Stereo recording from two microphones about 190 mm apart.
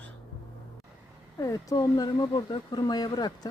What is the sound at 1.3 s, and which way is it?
Speech, 20° left (ahead or behind).